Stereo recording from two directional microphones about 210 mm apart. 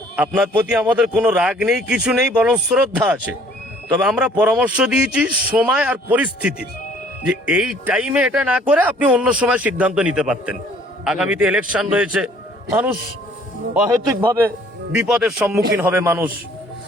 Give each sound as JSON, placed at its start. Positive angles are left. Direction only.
{"t": 0.2, "sound": "speech", "side_deg": -5}
{"t": 13.7, "sound": "a man's voice", "side_deg": -10}